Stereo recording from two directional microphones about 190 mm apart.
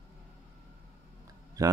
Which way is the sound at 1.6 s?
20° right (ahead or behind).